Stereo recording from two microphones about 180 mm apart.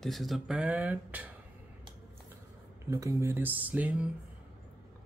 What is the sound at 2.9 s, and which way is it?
Speech, 15° right (ahead or behind).